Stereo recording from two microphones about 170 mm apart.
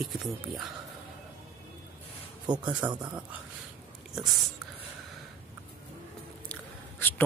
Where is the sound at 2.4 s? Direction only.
25° right (ahead or behind).